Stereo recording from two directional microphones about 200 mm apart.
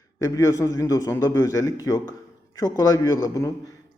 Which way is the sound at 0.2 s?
15° left (ahead or behind).